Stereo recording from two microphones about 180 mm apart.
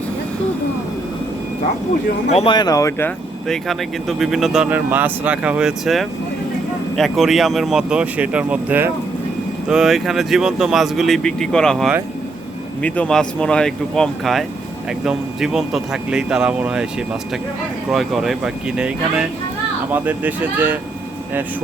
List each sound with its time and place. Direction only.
2.3 s speech: 30° left (ahead or behind)
4.2 s speech: centre (ahead or behind)
17.9 s speech: centre (ahead or behind)